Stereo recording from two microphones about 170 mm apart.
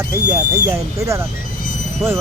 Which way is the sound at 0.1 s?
20° right (ahead or behind).